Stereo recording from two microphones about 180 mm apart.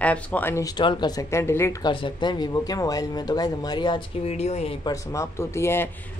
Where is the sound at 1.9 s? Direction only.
25° left (ahead or behind).